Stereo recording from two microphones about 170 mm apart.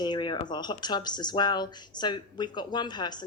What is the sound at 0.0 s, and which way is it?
A woman's voice, 25° left (ahead or behind).